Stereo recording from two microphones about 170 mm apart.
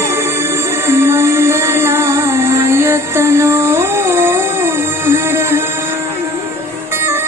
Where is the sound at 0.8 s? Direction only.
15° right (ahead or behind).